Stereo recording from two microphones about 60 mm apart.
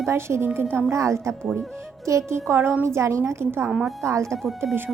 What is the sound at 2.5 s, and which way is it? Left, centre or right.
Speech, right.